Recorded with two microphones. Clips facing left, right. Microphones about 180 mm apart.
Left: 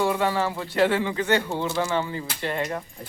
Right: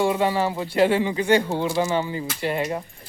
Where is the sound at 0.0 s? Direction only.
15° right (ahead or behind).